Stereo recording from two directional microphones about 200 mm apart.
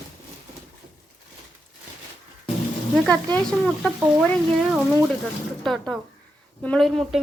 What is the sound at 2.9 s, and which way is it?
Speech, centre (ahead or behind).